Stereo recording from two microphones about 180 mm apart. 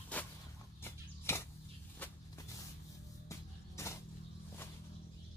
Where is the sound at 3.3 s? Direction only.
15° left (ahead or behind).